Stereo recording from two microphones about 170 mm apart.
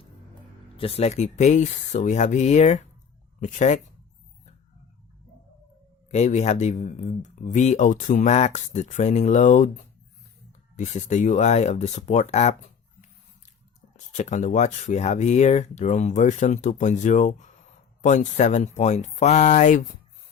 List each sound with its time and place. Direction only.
0.8 s speech: 35° left (ahead or behind)
6.1 s speech: 45° left (ahead or behind)
13.9 s speech: 45° left (ahead or behind)